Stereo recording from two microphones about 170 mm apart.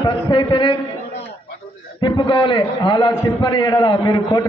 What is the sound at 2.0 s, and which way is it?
A man's voice, 25° left (ahead or behind).